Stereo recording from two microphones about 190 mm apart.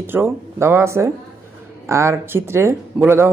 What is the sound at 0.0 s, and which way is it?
Speech, 10° right (ahead or behind).